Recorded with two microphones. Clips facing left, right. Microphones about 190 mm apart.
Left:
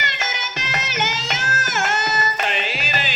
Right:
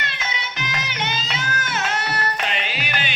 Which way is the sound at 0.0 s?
70° left (ahead or behind).